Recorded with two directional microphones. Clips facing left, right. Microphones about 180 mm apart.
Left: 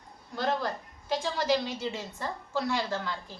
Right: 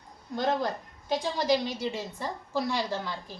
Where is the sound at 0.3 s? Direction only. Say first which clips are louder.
Right 2 dB; 20° right (ahead or behind).